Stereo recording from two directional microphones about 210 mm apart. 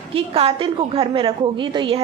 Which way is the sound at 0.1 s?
25° right (ahead or behind).